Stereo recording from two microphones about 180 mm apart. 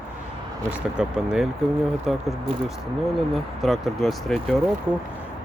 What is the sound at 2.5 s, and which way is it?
Speech, 30° right (ahead or behind).